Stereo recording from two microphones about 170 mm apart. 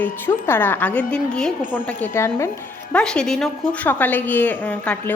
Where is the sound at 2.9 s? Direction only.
5° left (ahead or behind).